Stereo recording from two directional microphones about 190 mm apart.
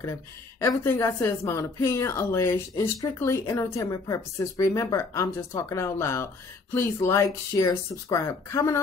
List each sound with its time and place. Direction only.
0.6 s a woman's voice: 15° left (ahead or behind)